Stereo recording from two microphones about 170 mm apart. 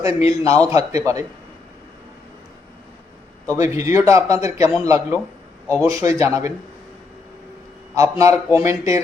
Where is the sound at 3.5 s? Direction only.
20° right (ahead or behind).